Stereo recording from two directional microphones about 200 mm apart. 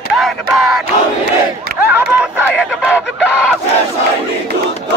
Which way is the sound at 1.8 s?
10° right (ahead or behind).